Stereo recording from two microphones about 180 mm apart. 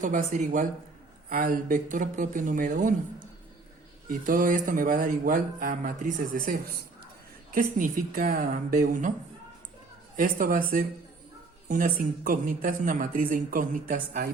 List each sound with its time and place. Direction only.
0.0 s speech: 45° right (ahead or behind)
4.1 s speech: 50° right (ahead or behind)
10.2 s speech: 50° right (ahead or behind)